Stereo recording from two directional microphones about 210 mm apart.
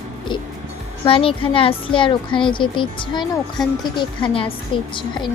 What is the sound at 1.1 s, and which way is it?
Speech, 25° left (ahead or behind).